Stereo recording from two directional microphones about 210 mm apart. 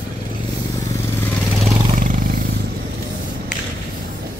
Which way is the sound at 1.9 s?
40° right (ahead or behind).